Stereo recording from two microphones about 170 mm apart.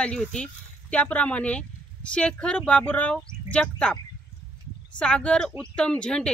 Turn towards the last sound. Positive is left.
turn(degrees=5)  # may be behind; listen again after turning